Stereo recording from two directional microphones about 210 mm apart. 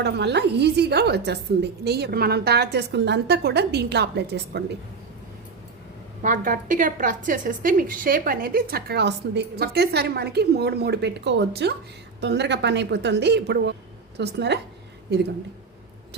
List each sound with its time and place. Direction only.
0.0 s a woman's voice: 55° right (ahead or behind)
6.2 s a woman's voice: 40° right (ahead or behind); by 14.6 s 55° right (ahead or behind)